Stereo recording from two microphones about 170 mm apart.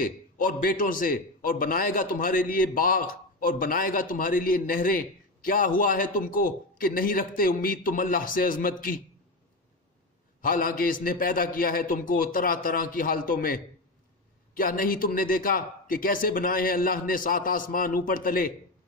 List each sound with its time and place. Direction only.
0.0 s a man's voice: 55° left (ahead or behind)
10.4 s a man's voice: 55° left (ahead or behind)
14.6 s a man's voice: 55° left (ahead or behind)